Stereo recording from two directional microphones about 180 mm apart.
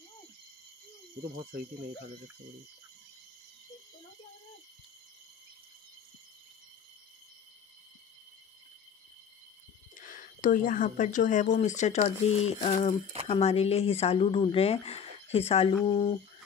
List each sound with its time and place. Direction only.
9.9 s speech: 45° left (ahead or behind); by 16.2 s 30° left (ahead or behind)